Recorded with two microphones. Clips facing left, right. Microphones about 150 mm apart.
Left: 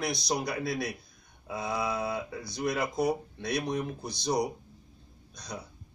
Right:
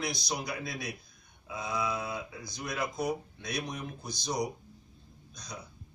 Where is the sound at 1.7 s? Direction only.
30° left (ahead or behind).